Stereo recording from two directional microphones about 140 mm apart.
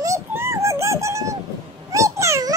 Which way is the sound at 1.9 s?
20° right (ahead or behind).